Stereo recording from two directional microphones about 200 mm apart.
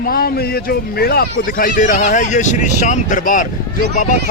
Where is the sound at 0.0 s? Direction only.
45° left (ahead or behind).